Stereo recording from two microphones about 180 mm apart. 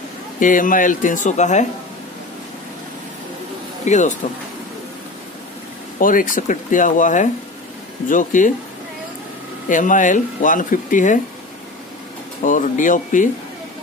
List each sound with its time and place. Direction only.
0.4 s speech: 45° left (ahead or behind)
3.8 s speech: 40° left (ahead or behind)
5.9 s speech: 50° left (ahead or behind)
9.7 s speech: 45° left (ahead or behind)
12.4 s speech: 45° left (ahead or behind)